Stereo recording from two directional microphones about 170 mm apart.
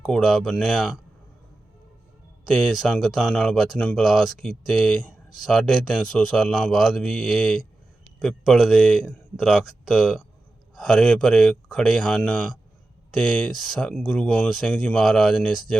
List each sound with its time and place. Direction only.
0.0 s speech: centre (ahead or behind)
2.5 s speech: centre (ahead or behind)